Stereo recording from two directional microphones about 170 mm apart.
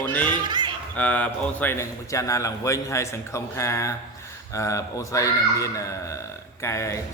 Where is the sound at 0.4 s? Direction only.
25° right (ahead or behind).